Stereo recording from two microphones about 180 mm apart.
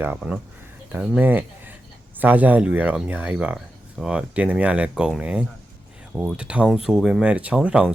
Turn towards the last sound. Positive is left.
turn(degrees=-5)  # may be behind; listen again after turning